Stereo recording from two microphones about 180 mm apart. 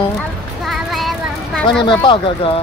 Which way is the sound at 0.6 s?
Centre (ahead or behind).